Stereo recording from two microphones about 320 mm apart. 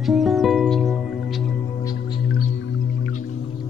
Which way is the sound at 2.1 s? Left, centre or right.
Left.